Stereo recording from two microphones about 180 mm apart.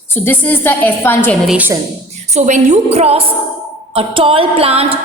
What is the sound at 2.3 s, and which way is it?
A woman's voice, 40° right (ahead or behind).